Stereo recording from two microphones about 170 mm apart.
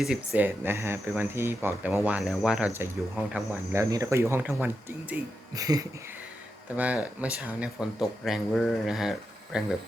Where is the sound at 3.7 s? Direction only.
20° right (ahead or behind).